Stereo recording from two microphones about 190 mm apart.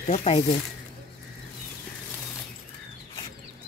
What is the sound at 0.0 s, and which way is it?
Speech, 35° left (ahead or behind).